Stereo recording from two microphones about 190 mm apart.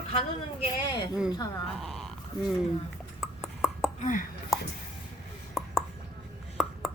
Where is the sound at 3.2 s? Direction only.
Centre (ahead or behind).